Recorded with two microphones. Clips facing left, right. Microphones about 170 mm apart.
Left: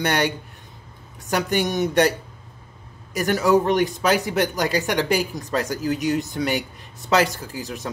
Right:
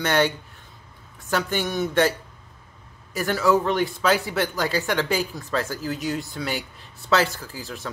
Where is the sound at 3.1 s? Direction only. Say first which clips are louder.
Left 2 dB; 15° left (ahead or behind).